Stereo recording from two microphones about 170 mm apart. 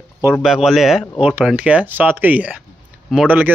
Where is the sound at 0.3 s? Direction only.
Centre (ahead or behind).